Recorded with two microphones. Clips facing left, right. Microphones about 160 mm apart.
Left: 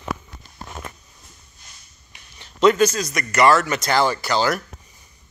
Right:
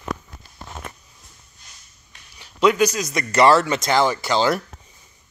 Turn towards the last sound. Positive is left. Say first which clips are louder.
# right 1 dB
turn(degrees=-20)  # may be behind; listen again after turning